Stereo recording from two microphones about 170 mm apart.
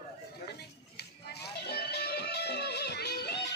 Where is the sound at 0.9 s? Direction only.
75° left (ahead or behind).